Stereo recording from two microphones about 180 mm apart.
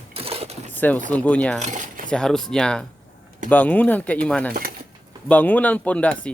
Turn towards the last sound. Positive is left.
turn(degrees=5)  # may be behind; listen again after turning